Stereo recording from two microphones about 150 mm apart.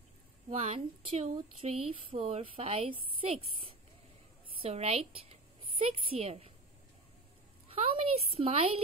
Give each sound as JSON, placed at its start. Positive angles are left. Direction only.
{"t": 0.5, "sound": "speech", "side_deg": -45}
{"t": 4.6, "sound": "a woman's voice", "side_deg": -40}
{"t": 7.7, "sound": "speech", "side_deg": -40}